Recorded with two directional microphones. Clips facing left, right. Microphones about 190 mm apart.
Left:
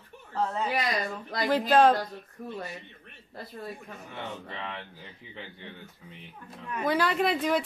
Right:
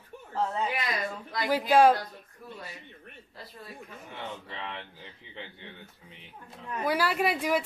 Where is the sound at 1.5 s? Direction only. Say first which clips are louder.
Even; 10° right (ahead or behind).